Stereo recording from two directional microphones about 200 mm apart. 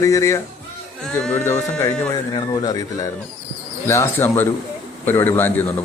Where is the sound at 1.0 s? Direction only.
5° left (ahead or behind).